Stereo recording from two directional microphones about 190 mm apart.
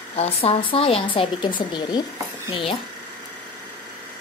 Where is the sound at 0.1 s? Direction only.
30° left (ahead or behind).